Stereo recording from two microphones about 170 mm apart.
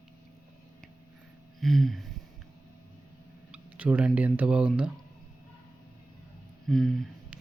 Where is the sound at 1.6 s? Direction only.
Centre (ahead or behind).